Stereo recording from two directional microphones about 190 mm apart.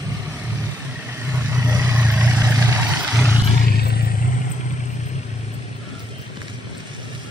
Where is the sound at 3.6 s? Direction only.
55° left (ahead or behind).